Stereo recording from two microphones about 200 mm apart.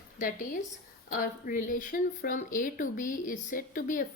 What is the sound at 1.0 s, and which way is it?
Speech, 45° left (ahead or behind).